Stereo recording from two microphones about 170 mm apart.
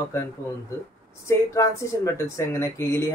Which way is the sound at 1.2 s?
15° left (ahead or behind).